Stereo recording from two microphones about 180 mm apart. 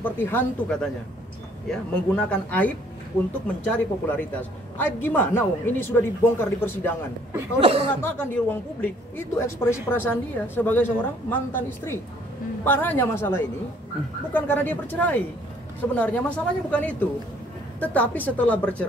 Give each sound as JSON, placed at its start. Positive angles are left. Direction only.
{"t": 0.0, "sound": "a woman's voice", "side_deg": 10}
{"t": 3.7, "sound": "a woman's voice", "side_deg": 10}
{"t": 7.6, "sound": "speech", "side_deg": -30}
{"t": 8.0, "sound": "a woman's voice", "side_deg": 10}